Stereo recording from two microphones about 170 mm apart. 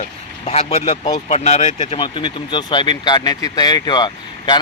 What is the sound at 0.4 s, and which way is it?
Speech, 35° left (ahead or behind).